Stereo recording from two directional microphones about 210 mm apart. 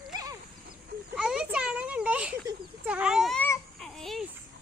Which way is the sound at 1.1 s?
5° right (ahead or behind).